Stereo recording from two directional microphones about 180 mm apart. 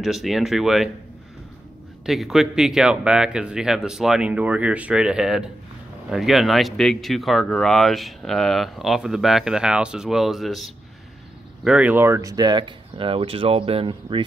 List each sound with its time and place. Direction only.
0.0 s speech: centre (ahead or behind)
2.0 s speech: centre (ahead or behind); by 14.2 s 30° right (ahead or behind)